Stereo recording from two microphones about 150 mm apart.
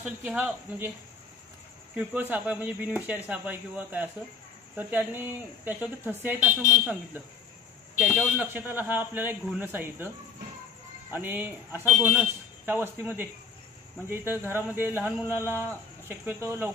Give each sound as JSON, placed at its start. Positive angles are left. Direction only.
{"t": 0.0, "sound": "speech", "side_deg": -10}
{"t": 2.0, "sound": "speech", "side_deg": -10}
{"t": 8.4, "sound": "speech", "side_deg": -10}